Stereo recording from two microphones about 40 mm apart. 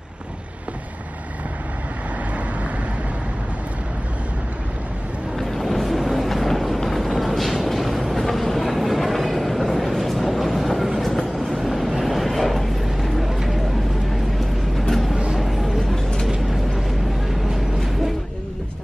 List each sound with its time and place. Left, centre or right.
5.4 s boat: centre
7.2 s vehicle: centre
11.1 s train: centre
11.6 s vehicle: centre
14.9 s a sound: centre
15.4 s a sound: centre
16.3 s vehicle: centre